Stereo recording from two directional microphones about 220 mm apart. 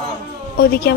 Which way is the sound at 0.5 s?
45° left (ahead or behind).